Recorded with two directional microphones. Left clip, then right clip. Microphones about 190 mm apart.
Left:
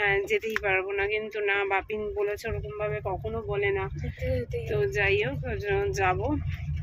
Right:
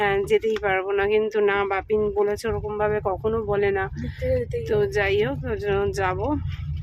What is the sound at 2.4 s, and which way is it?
Speech, 30° right (ahead or behind).